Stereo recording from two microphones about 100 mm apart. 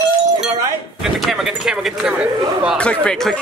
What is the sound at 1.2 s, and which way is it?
Speech, 5° right (ahead or behind).